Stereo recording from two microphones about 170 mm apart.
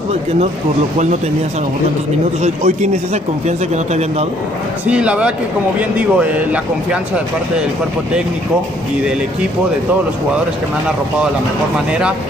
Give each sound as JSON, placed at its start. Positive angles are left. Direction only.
{"t": 2.4, "sound": "a man's voice", "side_deg": -45}
{"t": 4.8, "sound": "speech", "side_deg": -5}